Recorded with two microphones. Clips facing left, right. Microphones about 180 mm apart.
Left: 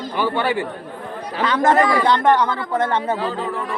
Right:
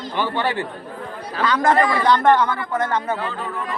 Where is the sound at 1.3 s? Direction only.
25° left (ahead or behind).